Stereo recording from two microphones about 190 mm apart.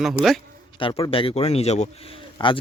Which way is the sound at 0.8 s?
25° left (ahead or behind).